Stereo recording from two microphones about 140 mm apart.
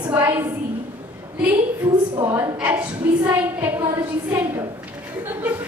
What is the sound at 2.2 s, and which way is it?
Speech, 15° right (ahead or behind).